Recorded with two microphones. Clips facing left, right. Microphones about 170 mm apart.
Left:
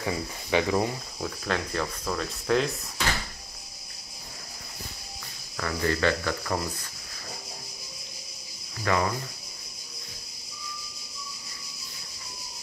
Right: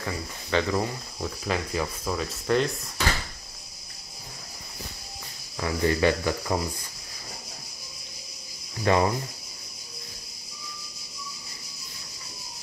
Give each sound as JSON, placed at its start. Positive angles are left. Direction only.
{"t": 0.0, "sound": "speech", "side_deg": 15}
{"t": 1.2, "sound": "speech", "side_deg": -5}
{"t": 5.6, "sound": "speech", "side_deg": -15}
{"t": 8.8, "sound": "speech", "side_deg": -25}